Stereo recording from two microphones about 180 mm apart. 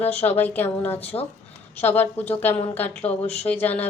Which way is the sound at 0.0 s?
10° left (ahead or behind).